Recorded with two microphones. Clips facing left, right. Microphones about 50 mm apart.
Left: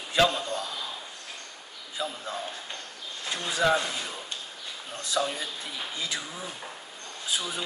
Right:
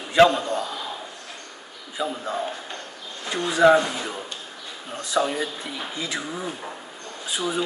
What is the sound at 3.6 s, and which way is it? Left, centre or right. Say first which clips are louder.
Speech: right 9 dB; right.